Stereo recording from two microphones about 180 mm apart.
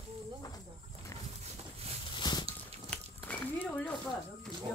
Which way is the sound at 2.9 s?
10° left (ahead or behind).